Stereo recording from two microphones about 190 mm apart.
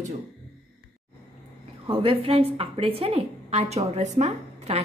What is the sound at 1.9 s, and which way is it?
A woman's voice, 30° right (ahead or behind).